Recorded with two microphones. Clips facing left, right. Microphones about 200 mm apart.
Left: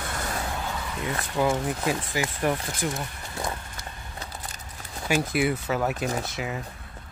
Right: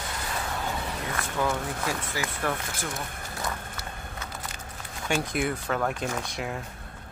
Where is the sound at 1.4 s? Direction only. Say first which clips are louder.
Left 4 dB; 15° left (ahead or behind).